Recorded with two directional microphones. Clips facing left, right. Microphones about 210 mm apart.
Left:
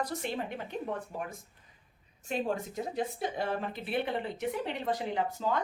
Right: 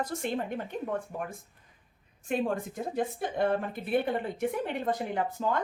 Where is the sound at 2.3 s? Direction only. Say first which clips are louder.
Right 3 dB; 55° right (ahead or behind).